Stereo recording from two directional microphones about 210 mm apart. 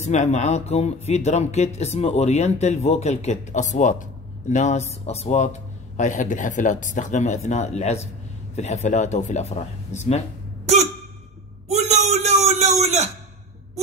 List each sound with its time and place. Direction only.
0.0 s speech: 30° left (ahead or behind)
10.6 s hiccup: 30° right (ahead or behind)
11.7 s a sound: 30° right (ahead or behind)